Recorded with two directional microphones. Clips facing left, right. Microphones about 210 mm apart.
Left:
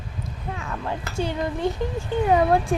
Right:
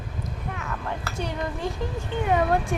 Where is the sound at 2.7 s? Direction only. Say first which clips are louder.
Left 4 dB; 30° left (ahead or behind).